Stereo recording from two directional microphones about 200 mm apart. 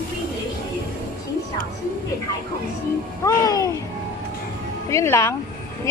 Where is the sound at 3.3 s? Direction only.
15° left (ahead or behind).